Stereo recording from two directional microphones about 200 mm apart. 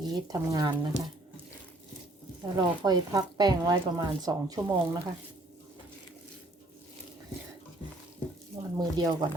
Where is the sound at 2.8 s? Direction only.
20° right (ahead or behind).